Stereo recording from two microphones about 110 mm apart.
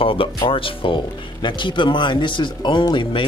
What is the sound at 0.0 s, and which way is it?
Speech, 55° left (ahead or behind).